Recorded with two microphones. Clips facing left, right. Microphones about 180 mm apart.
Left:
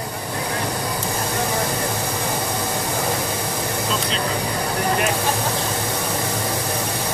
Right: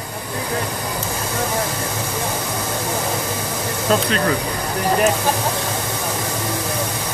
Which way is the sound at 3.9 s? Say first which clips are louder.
Right 11 dB; 55° right (ahead or behind).